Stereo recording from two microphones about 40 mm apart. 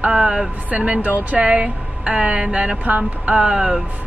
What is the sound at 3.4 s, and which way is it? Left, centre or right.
Speech, right.